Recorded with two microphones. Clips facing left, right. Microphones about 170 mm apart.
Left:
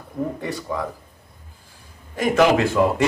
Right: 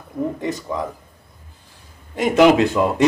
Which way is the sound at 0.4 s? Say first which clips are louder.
Right 2 dB; 20° right (ahead or behind).